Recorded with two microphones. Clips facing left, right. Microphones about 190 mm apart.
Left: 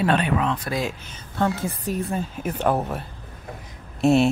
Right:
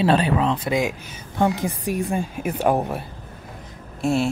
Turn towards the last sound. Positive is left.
turn(degrees=20)  # may be behind; listen again after turning